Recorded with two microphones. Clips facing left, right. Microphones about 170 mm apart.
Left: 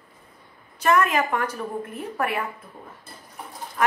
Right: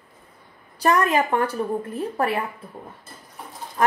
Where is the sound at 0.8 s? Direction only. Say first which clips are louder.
Right 1 dB; 35° right (ahead or behind).